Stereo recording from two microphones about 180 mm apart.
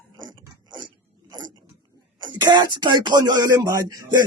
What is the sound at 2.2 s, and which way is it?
Speech, 25° right (ahead or behind).